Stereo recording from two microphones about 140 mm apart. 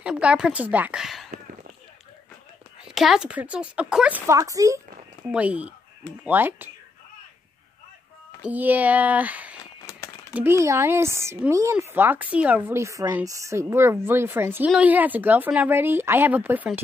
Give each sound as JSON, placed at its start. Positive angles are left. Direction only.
{"t": 0.0, "sound": "speech", "side_deg": -10}
{"t": 2.8, "sound": "speech", "side_deg": -5}
{"t": 4.3, "sound": "speech", "side_deg": -25}
{"t": 5.3, "sound": "speech", "side_deg": -10}
{"t": 8.4, "sound": "speech", "side_deg": -10}